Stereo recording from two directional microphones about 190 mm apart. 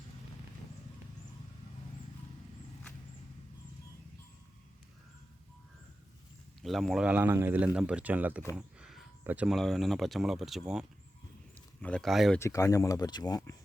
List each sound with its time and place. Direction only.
6.6 s speech: centre (ahead or behind)
11.5 s a sound: 5° left (ahead or behind)
12.4 s speech: 15° left (ahead or behind)